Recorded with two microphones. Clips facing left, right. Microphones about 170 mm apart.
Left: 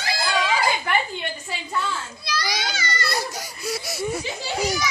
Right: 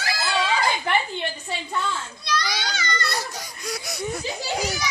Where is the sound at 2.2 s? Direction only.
10° left (ahead or behind).